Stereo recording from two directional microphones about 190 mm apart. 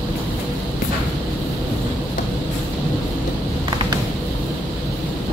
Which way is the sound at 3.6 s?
25° right (ahead or behind).